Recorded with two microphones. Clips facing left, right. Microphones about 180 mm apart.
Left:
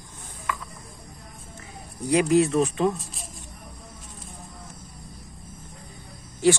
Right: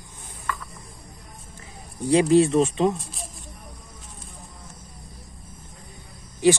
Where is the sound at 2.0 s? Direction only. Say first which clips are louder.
Right 3 dB; 30° right (ahead or behind).